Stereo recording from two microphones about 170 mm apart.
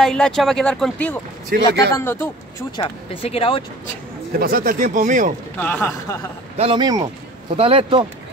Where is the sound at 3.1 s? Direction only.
35° left (ahead or behind).